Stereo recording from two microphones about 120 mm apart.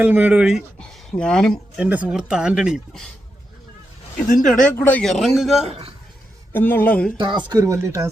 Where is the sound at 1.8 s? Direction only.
10° right (ahead or behind).